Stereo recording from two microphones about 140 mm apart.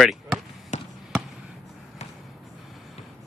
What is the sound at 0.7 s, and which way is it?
Basketball bounce, 55° left (ahead or behind).